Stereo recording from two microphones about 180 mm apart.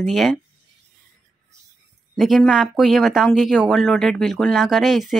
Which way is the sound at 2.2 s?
Centre (ahead or behind).